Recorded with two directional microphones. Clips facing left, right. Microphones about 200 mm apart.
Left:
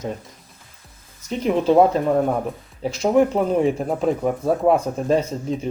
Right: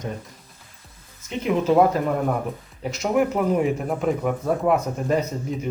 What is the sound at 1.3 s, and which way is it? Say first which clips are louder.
Speech: left 2 dB; 35° left (ahead or behind).